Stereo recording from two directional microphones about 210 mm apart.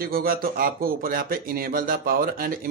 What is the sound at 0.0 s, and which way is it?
Speech, 45° right (ahead or behind).